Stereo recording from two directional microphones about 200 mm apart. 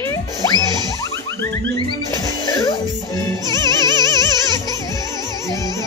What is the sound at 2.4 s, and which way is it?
Music, 20° left (ahead or behind).